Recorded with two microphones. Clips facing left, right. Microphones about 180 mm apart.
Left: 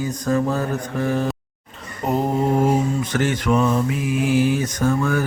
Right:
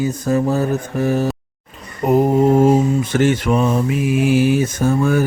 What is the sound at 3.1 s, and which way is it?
Mantra, 25° right (ahead or behind).